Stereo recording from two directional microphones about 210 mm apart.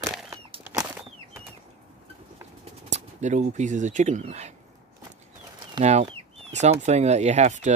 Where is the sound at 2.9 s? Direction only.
35° right (ahead or behind).